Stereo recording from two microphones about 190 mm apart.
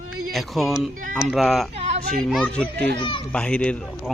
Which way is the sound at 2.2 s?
Centre (ahead or behind).